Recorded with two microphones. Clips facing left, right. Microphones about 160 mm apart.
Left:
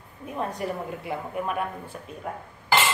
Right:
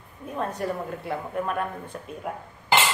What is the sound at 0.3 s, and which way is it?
A woman's voice, 15° left (ahead or behind).